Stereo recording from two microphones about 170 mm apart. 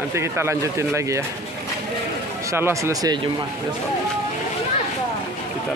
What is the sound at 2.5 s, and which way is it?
Speech, 15° right (ahead or behind).